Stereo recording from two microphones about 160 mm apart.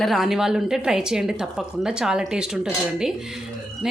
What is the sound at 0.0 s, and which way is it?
Speech, centre (ahead or behind).